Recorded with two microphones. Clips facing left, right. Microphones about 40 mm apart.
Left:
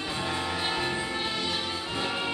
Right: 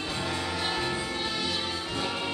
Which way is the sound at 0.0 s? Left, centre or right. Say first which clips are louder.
Left 1 dB; centre.